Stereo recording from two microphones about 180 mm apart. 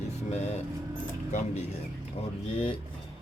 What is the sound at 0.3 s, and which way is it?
Speech, 40° left (ahead or behind).